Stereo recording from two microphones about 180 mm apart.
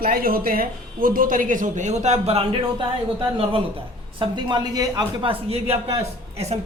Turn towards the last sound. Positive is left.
turn(degrees=-35)  # may be behind; listen again after turning